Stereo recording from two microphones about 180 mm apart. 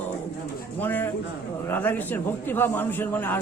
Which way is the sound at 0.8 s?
10° left (ahead or behind).